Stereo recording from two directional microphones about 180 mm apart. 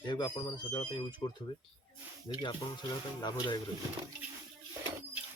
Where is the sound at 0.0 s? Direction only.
25° left (ahead or behind).